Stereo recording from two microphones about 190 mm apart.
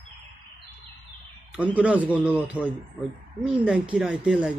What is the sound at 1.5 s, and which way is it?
A man's voice, 5° right (ahead or behind).